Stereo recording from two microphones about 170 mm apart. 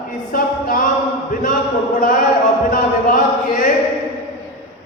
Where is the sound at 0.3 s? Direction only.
55° left (ahead or behind).